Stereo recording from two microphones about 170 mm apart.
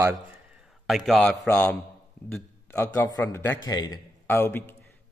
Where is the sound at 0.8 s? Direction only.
Centre (ahead or behind).